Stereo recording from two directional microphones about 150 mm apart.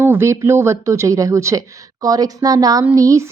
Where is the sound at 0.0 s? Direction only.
15° right (ahead or behind).